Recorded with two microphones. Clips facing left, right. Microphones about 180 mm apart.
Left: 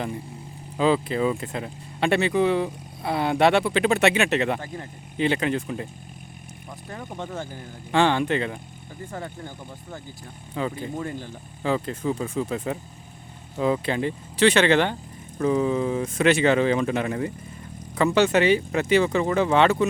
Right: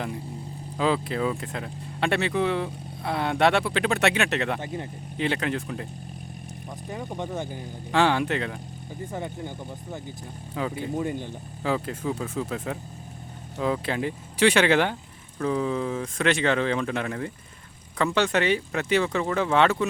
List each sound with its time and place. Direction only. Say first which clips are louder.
0.8 s speech: left 3 dB; centre (ahead or behind)
6.8 s speech: right 2 dB; 15° right (ahead or behind)
7.9 s speech: left 2 dB; 5° right (ahead or behind)
9.1 s speech: right 2 dB; 15° right (ahead or behind)
10.6 s speech: left 2 dB; 5° right (ahead or behind)
10.9 s speech: right 3 dB; 15° right (ahead or behind)
11.6 s speech: left 2 dB; 5° right (ahead or behind)
15.4 s speech: left 4 dB; 5° left (ahead or behind)